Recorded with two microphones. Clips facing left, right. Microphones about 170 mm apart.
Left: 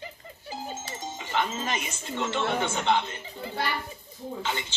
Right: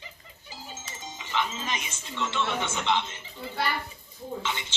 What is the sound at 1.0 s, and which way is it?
Speech, 50° left (ahead or behind).